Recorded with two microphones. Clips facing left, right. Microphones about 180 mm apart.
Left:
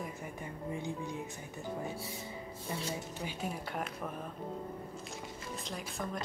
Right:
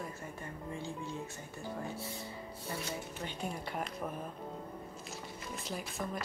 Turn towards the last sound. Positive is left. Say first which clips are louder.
# even
turn(degrees=0)  # may be behind; listen again after turning